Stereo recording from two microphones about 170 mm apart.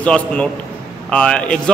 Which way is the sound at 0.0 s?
5° left (ahead or behind).